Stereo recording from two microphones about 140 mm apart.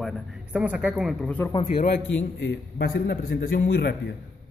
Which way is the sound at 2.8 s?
90° left.